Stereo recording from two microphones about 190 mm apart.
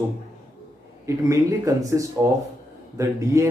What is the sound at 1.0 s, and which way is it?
Speech, 15° right (ahead or behind).